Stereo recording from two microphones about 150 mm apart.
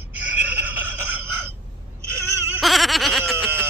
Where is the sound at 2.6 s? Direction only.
Centre (ahead or behind).